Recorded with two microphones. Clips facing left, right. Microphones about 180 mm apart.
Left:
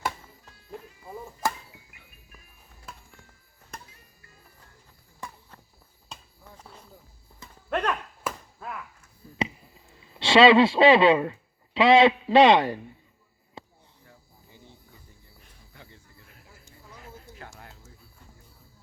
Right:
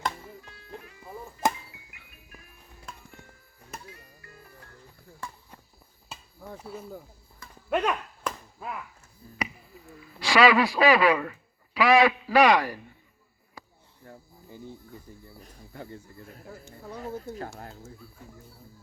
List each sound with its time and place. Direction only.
1.4 s music: 20° right (ahead or behind)
2.9 s music: 5° left (ahead or behind)
3.8 s music: 70° right (ahead or behind)
6.1 s cricket: 5° right (ahead or behind)
6.6 s speech: 5° right (ahead or behind)
8.3 s chop: 5° left (ahead or behind)
9.4 s speech: 25° left (ahead or behind)
13.6 s a sound: 25° left (ahead or behind)
14.0 s cricket: 50° right (ahead or behind)
15.4 s snake: 40° right (ahead or behind)
17.2 s speech: 40° right (ahead or behind)